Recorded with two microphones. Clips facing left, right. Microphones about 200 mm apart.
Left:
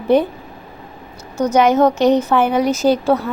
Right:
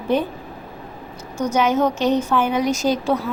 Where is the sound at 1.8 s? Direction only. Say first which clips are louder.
Left 5 dB; 10° left (ahead or behind).